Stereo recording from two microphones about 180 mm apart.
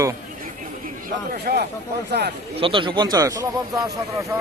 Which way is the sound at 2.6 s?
30° right (ahead or behind).